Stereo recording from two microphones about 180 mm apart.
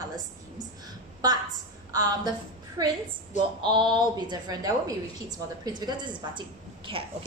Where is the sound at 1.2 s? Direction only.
20° right (ahead or behind).